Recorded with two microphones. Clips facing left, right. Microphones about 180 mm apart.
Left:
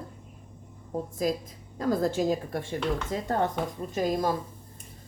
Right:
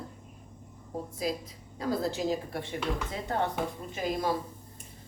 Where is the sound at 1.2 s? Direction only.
45° left (ahead or behind).